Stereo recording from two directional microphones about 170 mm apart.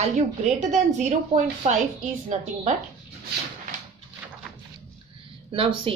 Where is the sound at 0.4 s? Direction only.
45° right (ahead or behind).